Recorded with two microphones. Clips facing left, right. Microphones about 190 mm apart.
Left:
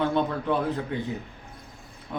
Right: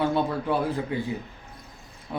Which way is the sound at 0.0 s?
5° right (ahead or behind).